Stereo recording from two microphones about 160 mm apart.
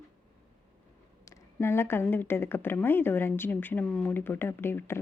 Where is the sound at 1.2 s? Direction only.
15° left (ahead or behind).